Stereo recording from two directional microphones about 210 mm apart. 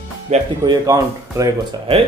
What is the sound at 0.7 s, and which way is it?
Speech, 15° right (ahead or behind).